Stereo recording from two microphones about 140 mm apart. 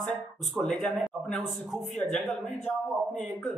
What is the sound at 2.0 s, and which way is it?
Speech, 20° left (ahead or behind).